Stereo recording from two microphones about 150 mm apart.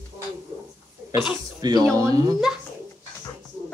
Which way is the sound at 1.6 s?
25° right (ahead or behind).